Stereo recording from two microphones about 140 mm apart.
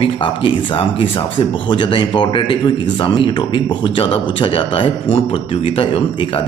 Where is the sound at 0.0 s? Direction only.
35° left (ahead or behind).